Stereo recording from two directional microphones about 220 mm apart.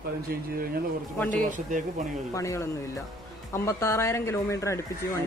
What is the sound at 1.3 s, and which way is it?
Speech, 35° right (ahead or behind).